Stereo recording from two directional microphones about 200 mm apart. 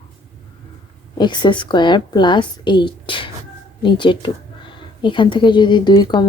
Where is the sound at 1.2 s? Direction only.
20° left (ahead or behind).